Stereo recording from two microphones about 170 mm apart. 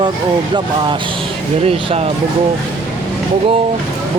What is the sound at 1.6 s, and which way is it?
Speech, 35° right (ahead or behind).